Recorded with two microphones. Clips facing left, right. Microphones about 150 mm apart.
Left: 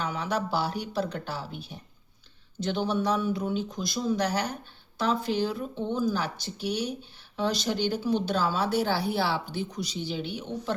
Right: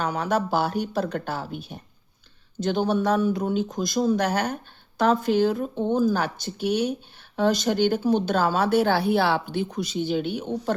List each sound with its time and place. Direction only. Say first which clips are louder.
0.0 s speech: right 5 dB; 50° right (ahead or behind)